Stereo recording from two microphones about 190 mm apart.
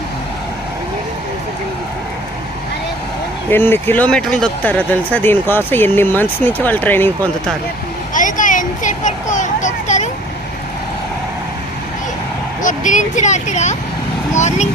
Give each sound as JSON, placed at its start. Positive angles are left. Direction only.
{"t": 3.5, "sound": "speech", "side_deg": 10}
{"t": 8.1, "sound": "a sound", "side_deg": 45}
{"t": 12.6, "sound": "speech", "side_deg": 40}